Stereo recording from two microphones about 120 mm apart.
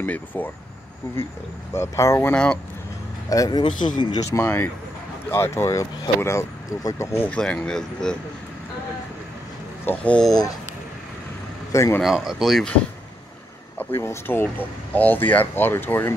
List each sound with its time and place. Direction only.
0.0 s speech: 15° left (ahead or behind)
1.8 s speech: 25° left (ahead or behind)
3.3 s a man's voice: 30° left (ahead or behind)
3.7 s speech: 90° left
4.2 s speech: 20° left (ahead or behind); by 8.2 s 5° left (ahead or behind)
9.8 s speech: 10° left (ahead or behind)
11.7 s speech: 25° left (ahead or behind)
12.0 s speech: 5° right (ahead or behind)
13.7 s speech: 20° left (ahead or behind)